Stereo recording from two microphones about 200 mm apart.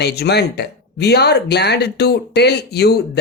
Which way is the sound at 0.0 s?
55° left (ahead or behind).